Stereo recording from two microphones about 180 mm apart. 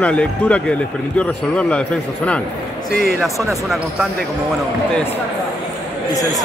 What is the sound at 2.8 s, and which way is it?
Speech, 60° right (ahead or behind).